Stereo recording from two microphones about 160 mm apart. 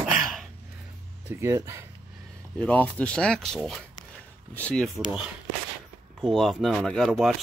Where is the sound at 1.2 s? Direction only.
15° right (ahead or behind).